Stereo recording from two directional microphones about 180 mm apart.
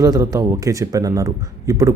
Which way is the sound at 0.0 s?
20° right (ahead or behind).